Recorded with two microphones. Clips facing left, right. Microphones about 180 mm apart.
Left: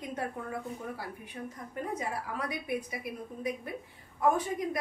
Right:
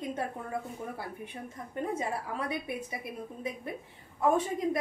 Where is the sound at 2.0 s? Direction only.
25° right (ahead or behind).